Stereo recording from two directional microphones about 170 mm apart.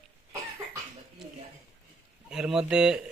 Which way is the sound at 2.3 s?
5° right (ahead or behind).